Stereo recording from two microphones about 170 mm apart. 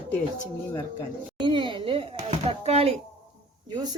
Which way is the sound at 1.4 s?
25° right (ahead or behind).